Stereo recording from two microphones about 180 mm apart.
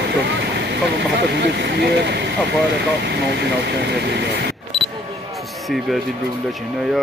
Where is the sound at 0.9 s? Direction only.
70° right (ahead or behind).